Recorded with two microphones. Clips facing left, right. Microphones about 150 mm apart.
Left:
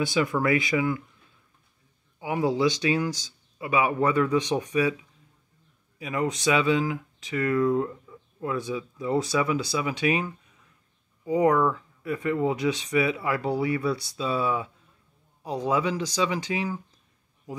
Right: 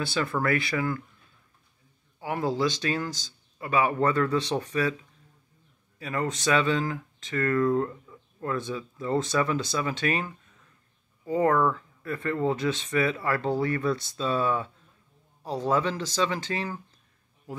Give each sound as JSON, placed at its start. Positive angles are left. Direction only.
{"t": 0.0, "sound": "speech", "side_deg": 15}
{"t": 2.1, "sound": "speech", "side_deg": 15}
{"t": 5.9, "sound": "speech", "side_deg": 15}